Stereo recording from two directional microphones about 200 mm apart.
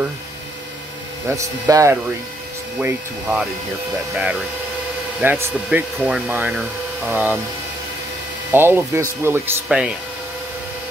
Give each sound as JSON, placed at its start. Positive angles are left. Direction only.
{"t": 1.3, "sound": "speech", "side_deg": -15}
{"t": 2.8, "sound": "speech", "side_deg": -5}
{"t": 8.5, "sound": "speech", "side_deg": -10}